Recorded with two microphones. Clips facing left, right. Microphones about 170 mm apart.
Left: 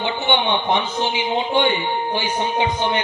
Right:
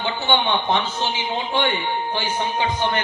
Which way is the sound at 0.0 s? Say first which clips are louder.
Left 1 dB; 20° left (ahead or behind).